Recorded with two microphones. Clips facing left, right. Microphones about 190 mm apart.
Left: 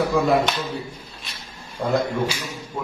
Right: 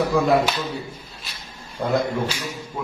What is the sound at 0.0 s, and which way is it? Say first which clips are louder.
Speech: even; centre (ahead or behind).